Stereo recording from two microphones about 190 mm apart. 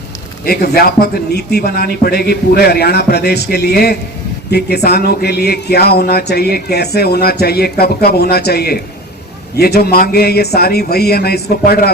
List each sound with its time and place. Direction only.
0.4 s a man's voice: 55° left (ahead or behind)